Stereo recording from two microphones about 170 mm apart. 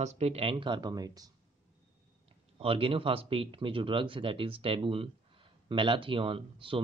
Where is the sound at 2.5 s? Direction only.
35° right (ahead or behind).